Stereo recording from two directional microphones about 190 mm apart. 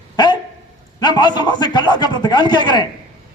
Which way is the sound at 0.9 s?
20° left (ahead or behind).